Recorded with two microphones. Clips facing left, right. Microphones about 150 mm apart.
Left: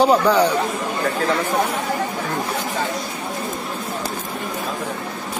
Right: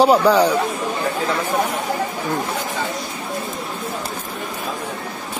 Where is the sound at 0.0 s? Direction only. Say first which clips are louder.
Right 2 dB; 10° right (ahead or behind).